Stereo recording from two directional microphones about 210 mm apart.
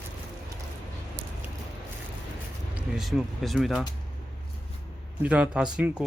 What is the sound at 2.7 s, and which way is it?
Speech, 5° right (ahead or behind).